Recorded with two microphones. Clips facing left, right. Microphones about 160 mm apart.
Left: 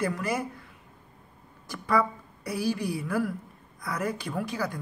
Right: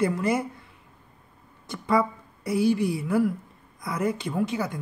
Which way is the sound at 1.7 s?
25° right (ahead or behind).